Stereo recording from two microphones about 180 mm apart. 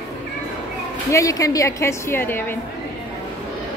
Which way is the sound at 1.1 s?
20° left (ahead or behind).